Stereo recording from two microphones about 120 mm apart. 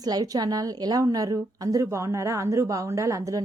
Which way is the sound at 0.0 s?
30° right (ahead or behind).